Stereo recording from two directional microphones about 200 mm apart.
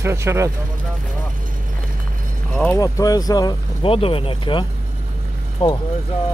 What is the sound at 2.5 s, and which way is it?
Speech, 10° left (ahead or behind).